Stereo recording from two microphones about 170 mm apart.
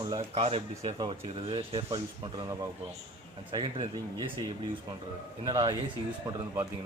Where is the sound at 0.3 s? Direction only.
35° right (ahead or behind).